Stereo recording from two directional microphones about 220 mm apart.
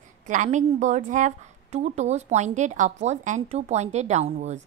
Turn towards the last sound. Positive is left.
turn(degrees=-30)  # may be behind; listen again after turning